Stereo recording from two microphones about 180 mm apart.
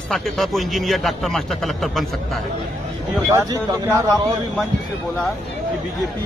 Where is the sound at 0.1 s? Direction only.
Centre (ahead or behind).